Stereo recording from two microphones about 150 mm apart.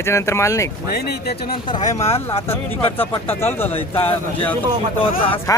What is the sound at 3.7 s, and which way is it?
Speech, 35° left (ahead or behind).